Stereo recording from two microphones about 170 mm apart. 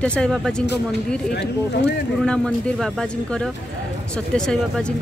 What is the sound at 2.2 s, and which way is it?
Speech, 5° left (ahead or behind).